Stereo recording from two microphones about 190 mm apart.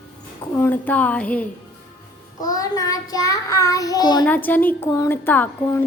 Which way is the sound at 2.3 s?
20° left (ahead or behind).